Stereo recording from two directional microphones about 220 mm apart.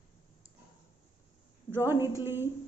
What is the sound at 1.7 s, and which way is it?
Speech, 10° right (ahead or behind).